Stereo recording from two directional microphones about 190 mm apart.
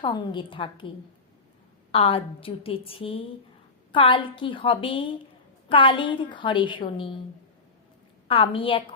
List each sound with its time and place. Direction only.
0.0 s a woman's voice: 25° left (ahead or behind)
8.3 s a woman's voice: 30° left (ahead or behind)